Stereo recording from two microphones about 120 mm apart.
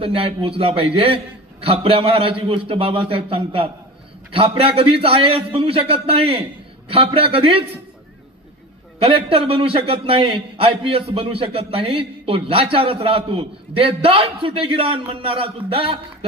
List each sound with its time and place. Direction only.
0.0 s a man's voice: 50° right (ahead or behind)
9.0 s a man's voice: 50° right (ahead or behind)